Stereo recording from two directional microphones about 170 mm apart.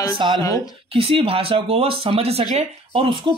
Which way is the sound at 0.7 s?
35° right (ahead or behind).